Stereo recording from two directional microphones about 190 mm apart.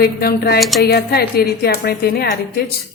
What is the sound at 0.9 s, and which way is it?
A woman's voice, 55° left (ahead or behind).